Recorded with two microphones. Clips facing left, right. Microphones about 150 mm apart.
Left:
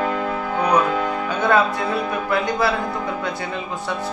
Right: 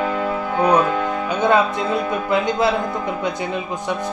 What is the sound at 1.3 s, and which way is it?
Speech, 20° right (ahead or behind).